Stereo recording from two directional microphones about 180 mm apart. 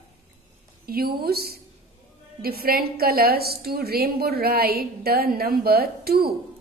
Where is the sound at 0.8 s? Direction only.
55° right (ahead or behind).